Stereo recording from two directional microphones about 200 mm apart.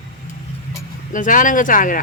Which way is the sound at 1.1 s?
40° left (ahead or behind).